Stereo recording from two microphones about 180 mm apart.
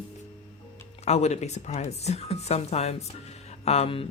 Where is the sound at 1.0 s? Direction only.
40° left (ahead or behind).